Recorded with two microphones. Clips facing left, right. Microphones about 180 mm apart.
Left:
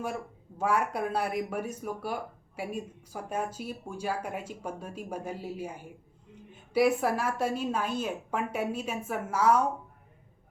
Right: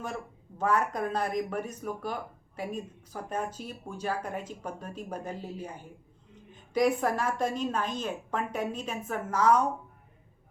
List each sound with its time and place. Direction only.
0.6 s speech: 10° left (ahead or behind)